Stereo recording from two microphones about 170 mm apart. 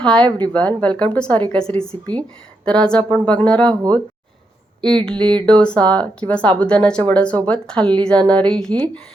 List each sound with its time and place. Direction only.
0.0 s a woman's voice: 5° left (ahead or behind)
0.3 s speech: 25° right (ahead or behind)
0.8 s a woman's voice: 5° left (ahead or behind)
5.0 s speech: 5° left (ahead or behind)